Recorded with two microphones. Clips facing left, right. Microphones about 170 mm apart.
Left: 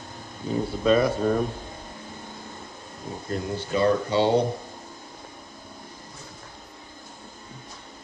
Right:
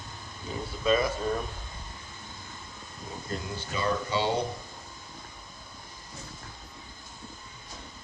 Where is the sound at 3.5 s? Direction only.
55° left (ahead or behind).